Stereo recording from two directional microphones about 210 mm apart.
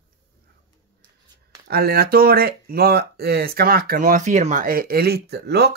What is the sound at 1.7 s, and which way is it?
Speech, 45° right (ahead or behind).